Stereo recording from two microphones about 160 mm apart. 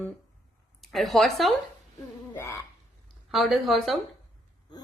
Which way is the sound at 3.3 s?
Centre (ahead or behind).